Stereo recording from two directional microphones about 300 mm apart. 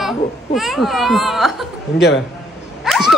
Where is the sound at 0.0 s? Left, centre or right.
Centre.